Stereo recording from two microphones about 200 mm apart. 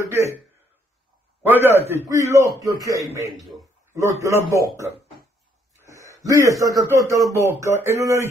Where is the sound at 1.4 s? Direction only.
10° right (ahead or behind).